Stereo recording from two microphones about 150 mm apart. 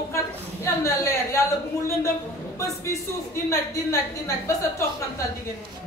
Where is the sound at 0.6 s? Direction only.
20° left (ahead or behind).